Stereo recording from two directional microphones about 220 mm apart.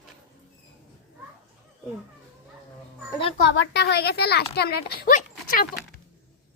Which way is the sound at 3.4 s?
55° left (ahead or behind).